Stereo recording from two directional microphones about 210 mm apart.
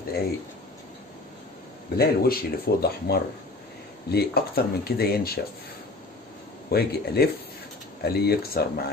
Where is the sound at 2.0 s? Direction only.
45° left (ahead or behind).